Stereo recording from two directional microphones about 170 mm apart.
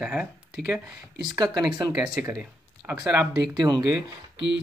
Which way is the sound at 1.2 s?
25° right (ahead or behind).